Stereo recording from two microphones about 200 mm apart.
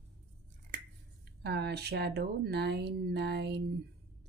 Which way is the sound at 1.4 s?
55° right (ahead or behind).